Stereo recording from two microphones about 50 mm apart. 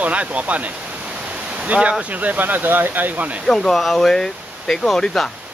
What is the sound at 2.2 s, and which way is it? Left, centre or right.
Speech, right.